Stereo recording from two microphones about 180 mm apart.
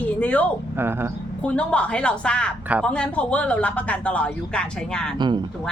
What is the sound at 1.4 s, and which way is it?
Speech, 5° left (ahead or behind).